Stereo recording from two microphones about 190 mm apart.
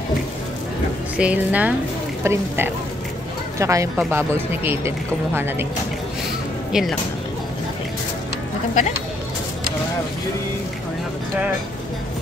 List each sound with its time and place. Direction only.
1.1 s speech: 5° right (ahead or behind)
6.7 s speech: centre (ahead or behind)